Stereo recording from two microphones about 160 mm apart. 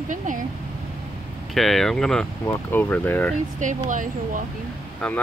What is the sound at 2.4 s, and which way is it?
Speech, 15° left (ahead or behind).